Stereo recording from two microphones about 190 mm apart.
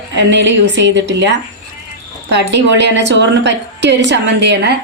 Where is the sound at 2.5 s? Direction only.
65° right (ahead or behind).